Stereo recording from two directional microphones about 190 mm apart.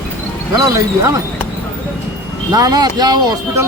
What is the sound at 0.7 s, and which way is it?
Speech, 15° right (ahead or behind).